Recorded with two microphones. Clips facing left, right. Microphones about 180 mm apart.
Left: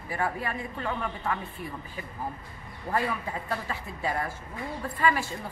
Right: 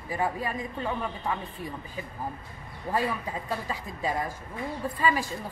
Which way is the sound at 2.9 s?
10° right (ahead or behind).